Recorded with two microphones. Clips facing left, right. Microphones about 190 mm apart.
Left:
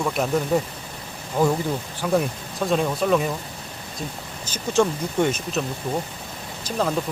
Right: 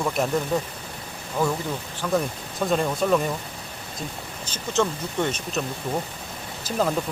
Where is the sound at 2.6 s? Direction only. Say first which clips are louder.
Left 1 dB; centre (ahead or behind).